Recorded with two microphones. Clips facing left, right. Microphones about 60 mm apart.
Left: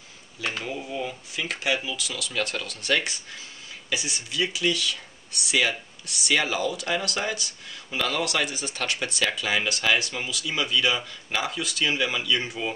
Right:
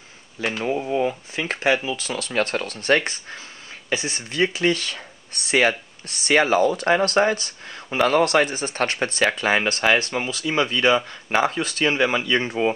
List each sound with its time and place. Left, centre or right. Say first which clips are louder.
0.7 s speech: right 9 dB; right